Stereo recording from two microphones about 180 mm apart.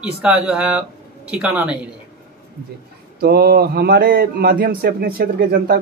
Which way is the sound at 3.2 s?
60° right (ahead or behind).